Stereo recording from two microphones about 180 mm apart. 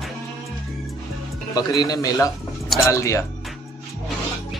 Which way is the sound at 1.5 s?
20° left (ahead or behind).